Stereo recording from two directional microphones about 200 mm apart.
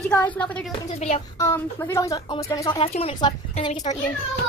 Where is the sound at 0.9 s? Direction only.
35° left (ahead or behind).